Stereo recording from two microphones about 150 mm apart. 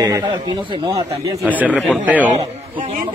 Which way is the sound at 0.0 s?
25° right (ahead or behind).